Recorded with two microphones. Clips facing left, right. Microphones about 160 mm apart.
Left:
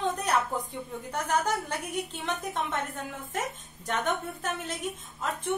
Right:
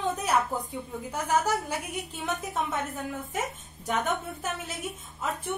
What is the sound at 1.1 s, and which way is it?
A woman's voice, 5° right (ahead or behind).